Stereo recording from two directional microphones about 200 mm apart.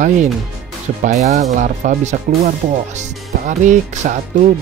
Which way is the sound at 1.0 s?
35° right (ahead or behind).